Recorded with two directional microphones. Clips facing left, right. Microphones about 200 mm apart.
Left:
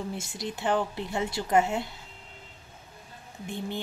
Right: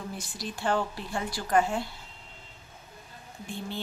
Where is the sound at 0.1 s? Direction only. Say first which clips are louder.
Left 3 dB; 25° left (ahead or behind).